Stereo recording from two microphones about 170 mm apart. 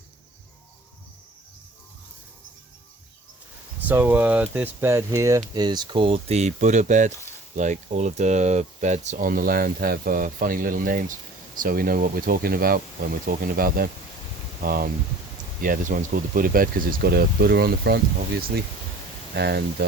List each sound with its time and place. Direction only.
3.8 s speech: 10° right (ahead or behind); by 18.0 s 65° right (ahead or behind)
19.3 s speech: 75° right (ahead or behind)